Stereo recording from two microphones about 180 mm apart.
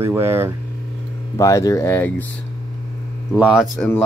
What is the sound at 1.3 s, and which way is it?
Speech, 20° left (ahead or behind).